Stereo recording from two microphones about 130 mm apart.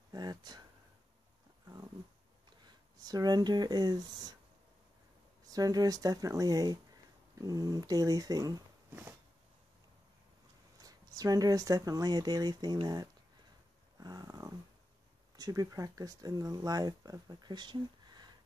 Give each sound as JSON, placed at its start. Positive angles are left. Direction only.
{"t": 0.1, "sound": "speech", "side_deg": -30}
{"t": 2.6, "sound": "speech", "side_deg": -30}
{"t": 5.5, "sound": "speech", "side_deg": -30}
{"t": 10.8, "sound": "speech", "side_deg": -30}
{"t": 13.9, "sound": "a sound", "side_deg": -30}
{"t": 15.3, "sound": "speech", "side_deg": -30}